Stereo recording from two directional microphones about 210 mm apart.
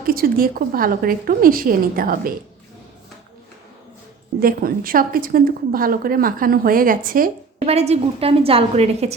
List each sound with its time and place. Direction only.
0.1 s a woman's voice: 45° right (ahead or behind)
4.4 s a woman's voice: 45° right (ahead or behind)
7.7 s a woman's voice: 30° right (ahead or behind)